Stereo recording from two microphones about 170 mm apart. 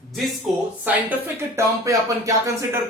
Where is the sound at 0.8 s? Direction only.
10° right (ahead or behind).